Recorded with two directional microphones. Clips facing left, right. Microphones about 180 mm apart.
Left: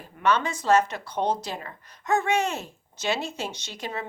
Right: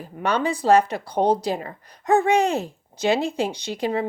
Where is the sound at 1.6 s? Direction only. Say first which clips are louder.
Right 6 dB; 35° right (ahead or behind).